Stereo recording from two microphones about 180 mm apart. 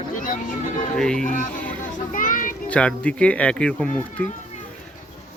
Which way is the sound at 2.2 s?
50° left (ahead or behind).